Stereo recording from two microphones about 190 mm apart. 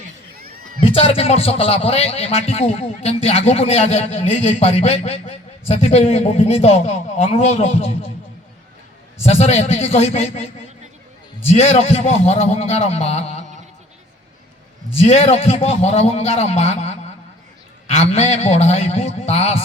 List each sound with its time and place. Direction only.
0.8 s a man's voice: 30° left (ahead or behind)
9.2 s a man's voice: 35° left (ahead or behind)
11.4 s a man's voice: 30° left (ahead or behind)
15.0 s a man's voice: 30° left (ahead or behind)